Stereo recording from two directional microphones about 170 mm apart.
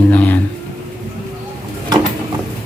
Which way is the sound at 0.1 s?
10° left (ahead or behind).